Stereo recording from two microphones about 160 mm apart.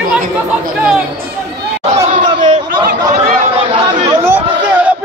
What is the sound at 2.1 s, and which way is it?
Chatter, 55° right (ahead or behind).